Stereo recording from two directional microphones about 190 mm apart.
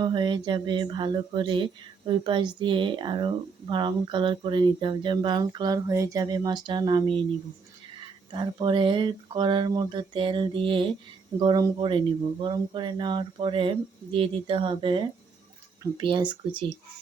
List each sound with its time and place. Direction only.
0.0 s speech: 25° right (ahead or behind)
8.3 s speech: 25° right (ahead or behind)